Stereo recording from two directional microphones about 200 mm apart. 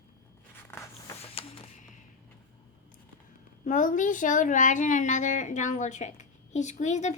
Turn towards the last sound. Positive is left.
turn(degrees=35)  # may be behind; listen again after turning